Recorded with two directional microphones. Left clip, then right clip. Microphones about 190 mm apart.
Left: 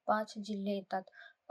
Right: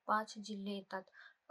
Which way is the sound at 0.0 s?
20° left (ahead or behind).